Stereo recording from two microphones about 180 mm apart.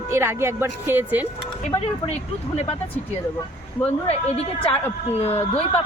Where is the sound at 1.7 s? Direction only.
35° left (ahead or behind).